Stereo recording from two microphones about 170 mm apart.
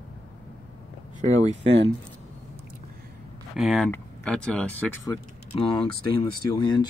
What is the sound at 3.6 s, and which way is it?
Speech, centre (ahead or behind).